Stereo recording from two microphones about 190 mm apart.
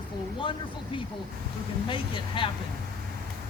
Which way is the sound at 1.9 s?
25° left (ahead or behind).